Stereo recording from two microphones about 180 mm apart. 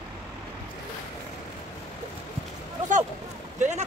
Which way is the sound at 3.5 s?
40° right (ahead or behind).